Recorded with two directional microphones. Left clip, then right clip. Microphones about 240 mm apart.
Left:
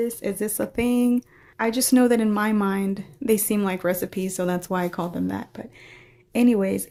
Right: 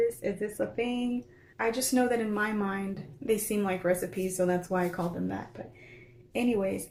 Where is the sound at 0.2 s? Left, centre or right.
Left.